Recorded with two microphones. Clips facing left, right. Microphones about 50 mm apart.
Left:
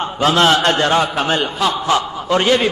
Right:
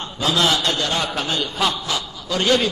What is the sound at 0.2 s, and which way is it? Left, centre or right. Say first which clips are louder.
A man's voice: left 6 dB; left.